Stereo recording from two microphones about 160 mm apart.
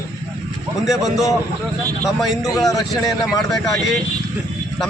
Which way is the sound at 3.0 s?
Centre (ahead or behind).